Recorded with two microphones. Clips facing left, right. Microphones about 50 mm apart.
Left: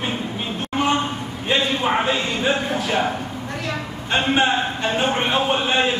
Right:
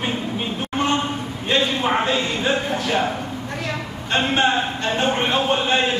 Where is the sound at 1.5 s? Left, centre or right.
Centre.